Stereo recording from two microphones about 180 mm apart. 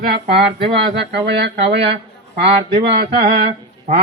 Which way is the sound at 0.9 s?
75° right (ahead or behind).